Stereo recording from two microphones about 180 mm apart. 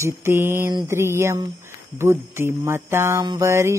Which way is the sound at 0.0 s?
15° right (ahead or behind).